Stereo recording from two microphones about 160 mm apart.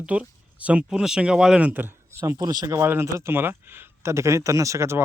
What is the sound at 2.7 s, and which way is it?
Speech, 15° right (ahead or behind).